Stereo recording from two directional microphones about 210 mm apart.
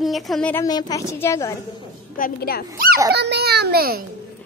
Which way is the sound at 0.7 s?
20° left (ahead or behind).